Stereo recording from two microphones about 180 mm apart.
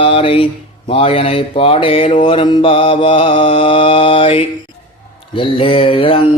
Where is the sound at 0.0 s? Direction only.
30° left (ahead or behind).